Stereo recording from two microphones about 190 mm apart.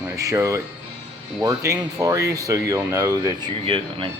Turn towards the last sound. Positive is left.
turn(degrees=-25)  # may be behind; listen again after turning